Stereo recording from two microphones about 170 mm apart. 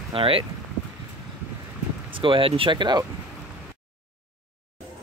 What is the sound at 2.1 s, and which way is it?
Speech, 30° right (ahead or behind).